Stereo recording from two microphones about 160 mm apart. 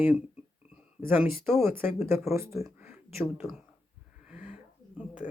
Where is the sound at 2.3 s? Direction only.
15° right (ahead or behind).